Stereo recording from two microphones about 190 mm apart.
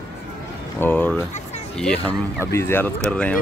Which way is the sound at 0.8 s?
10° left (ahead or behind).